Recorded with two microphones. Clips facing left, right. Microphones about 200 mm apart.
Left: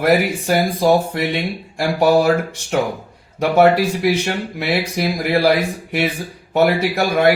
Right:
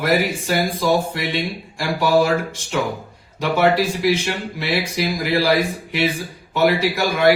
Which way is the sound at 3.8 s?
60° left (ahead or behind).